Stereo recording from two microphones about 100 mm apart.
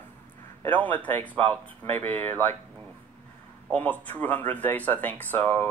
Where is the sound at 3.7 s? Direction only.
15° left (ahead or behind).